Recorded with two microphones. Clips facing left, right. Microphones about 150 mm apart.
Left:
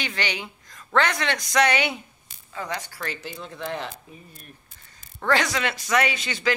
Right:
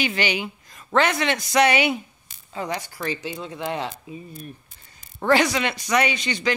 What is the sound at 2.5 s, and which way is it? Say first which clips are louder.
Speech: right 3 dB; 20° right (ahead or behind).